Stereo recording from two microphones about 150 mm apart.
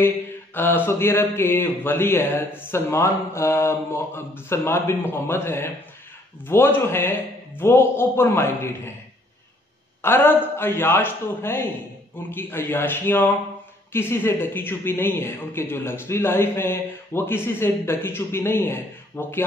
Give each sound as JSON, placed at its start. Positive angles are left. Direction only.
{"t": 0.6, "sound": "speech", "side_deg": 15}
{"t": 10.0, "sound": "speech", "side_deg": 15}